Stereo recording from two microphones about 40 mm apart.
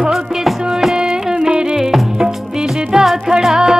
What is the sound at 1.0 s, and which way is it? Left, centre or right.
Music, centre.